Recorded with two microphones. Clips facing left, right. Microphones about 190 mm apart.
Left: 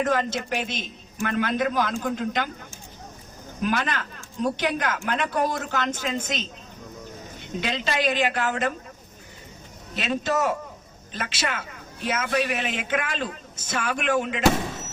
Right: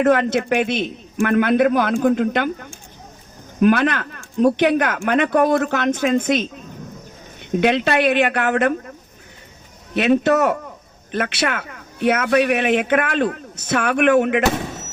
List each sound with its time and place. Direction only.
0.0 s a man's voice: 60° right (ahead or behind)
7.5 s a man's voice: 60° right (ahead or behind)
9.9 s a man's voice: 65° right (ahead or behind)